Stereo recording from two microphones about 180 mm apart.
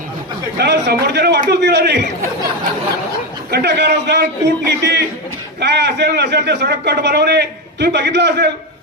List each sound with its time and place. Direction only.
0.6 s a man's voice: 65° right (ahead or behind)
3.5 s a man's voice: 65° right (ahead or behind)